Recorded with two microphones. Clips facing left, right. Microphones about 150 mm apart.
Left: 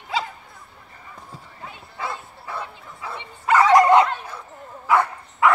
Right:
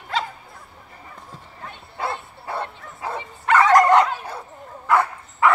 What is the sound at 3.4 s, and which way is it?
Dog, 5° left (ahead or behind).